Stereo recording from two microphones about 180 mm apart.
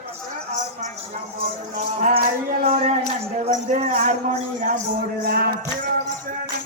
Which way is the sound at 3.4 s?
40° right (ahead or behind).